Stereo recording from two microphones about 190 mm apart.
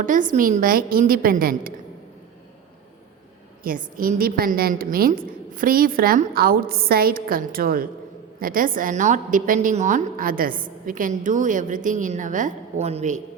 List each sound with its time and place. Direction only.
0.0 s a woman's voice: 45° right (ahead or behind)
3.6 s a woman's voice: 45° right (ahead or behind)